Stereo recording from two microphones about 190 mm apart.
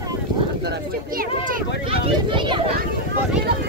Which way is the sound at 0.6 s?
50° right (ahead or behind).